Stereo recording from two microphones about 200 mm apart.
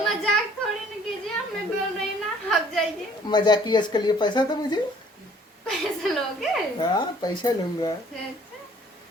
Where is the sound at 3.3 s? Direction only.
20° left (ahead or behind).